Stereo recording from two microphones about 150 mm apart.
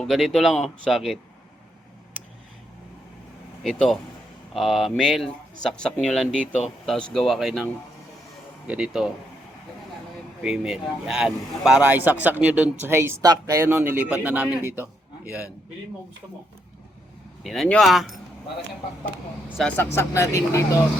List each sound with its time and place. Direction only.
0.0 s speech: centre (ahead or behind)
3.6 s speech: centre (ahead or behind)
10.4 s a man's voice: 5° right (ahead or behind)
17.4 s speech: centre (ahead or behind)
19.5 s speech: 10° left (ahead or behind)